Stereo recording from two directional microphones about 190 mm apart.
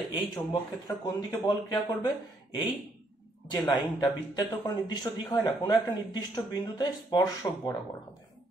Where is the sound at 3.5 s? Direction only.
20° left (ahead or behind).